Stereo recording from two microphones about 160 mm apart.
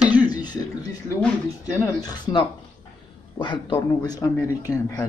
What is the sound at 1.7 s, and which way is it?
Speech, 20° left (ahead or behind).